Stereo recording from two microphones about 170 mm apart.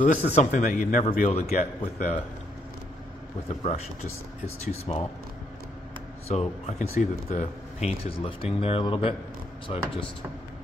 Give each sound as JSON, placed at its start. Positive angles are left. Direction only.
{"t": 0.0, "sound": "a man's voice", "side_deg": 50}
{"t": 1.5, "sound": "a man's voice", "side_deg": 55}
{"t": 3.4, "sound": "speech", "side_deg": 40}
{"t": 6.2, "sound": "speech", "side_deg": 40}